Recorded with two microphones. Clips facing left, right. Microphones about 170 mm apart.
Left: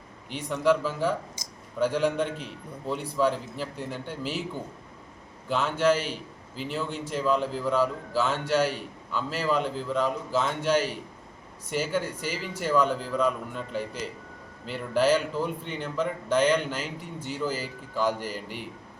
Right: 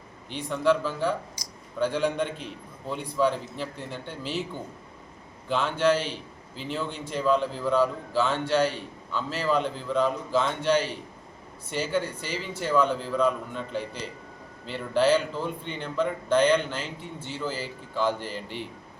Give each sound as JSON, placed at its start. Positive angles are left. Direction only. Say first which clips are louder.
{"t": 0.3, "sound": "a man's voice", "louder": "even", "side_deg": 5}
{"t": 5.5, "sound": "a man's voice", "louder": "even", "side_deg": 5}